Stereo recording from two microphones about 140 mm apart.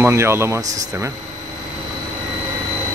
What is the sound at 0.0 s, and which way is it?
Speech, 20° right (ahead or behind).